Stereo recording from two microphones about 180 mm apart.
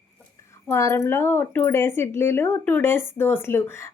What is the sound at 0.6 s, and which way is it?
Speech, 15° left (ahead or behind).